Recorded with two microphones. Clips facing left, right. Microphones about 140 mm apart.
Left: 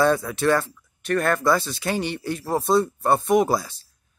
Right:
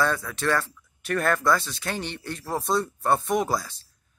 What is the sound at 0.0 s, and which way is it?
Speech, 15° left (ahead or behind).